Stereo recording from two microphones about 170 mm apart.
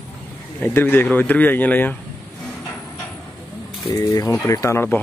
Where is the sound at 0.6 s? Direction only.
10° left (ahead or behind).